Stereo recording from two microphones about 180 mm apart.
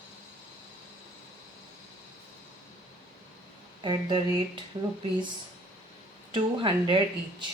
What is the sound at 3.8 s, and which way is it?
Speech, 25° right (ahead or behind).